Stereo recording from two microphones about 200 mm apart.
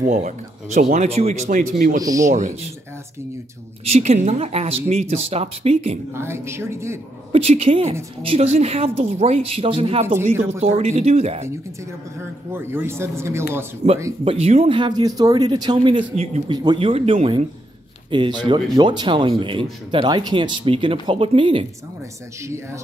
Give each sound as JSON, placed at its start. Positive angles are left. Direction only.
{"t": 0.7, "sound": "speech", "side_deg": -45}
{"t": 1.0, "sound": "speech", "side_deg": -30}
{"t": 2.0, "sound": "a man's voice", "side_deg": -15}
{"t": 2.3, "sound": "speech", "side_deg": -35}
{"t": 3.8, "sound": "speech", "side_deg": -30}
{"t": 6.1, "sound": "a man's voice", "side_deg": -10}
{"t": 7.3, "sound": "speech", "side_deg": -30}
{"t": 12.2, "sound": "a man's voice", "side_deg": -10}
{"t": 14.2, "sound": "speech", "side_deg": -30}
{"t": 22.4, "sound": "a man's voice", "side_deg": -15}